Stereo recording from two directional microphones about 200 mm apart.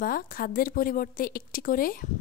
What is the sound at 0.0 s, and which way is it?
A woman's voice, 45° left (ahead or behind).